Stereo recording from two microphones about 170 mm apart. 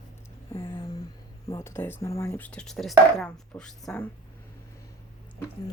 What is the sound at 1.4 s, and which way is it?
Speech, 15° left (ahead or behind).